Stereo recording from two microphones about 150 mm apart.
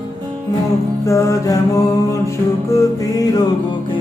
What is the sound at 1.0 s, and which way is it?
Mantra, 20° left (ahead or behind).